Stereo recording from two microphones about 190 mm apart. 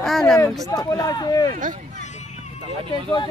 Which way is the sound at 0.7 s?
20° left (ahead or behind).